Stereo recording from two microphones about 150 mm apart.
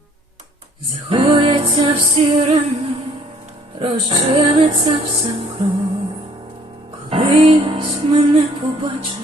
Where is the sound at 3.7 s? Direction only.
35° right (ahead or behind).